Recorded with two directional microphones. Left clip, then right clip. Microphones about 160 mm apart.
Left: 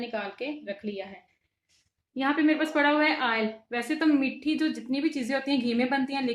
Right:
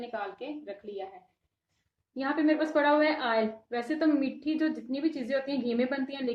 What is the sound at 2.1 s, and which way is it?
A woman's voice, 65° left (ahead or behind).